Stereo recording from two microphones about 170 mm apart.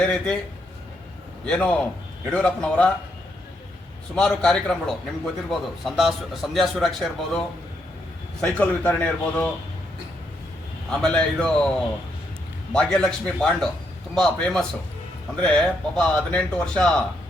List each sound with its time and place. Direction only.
0.0 s a man's voice: 5° left (ahead or behind)
1.5 s a man's voice: 5° left (ahead or behind)
4.1 s a man's voice: 5° left (ahead or behind)
11.0 s a man's voice: 5° left (ahead or behind)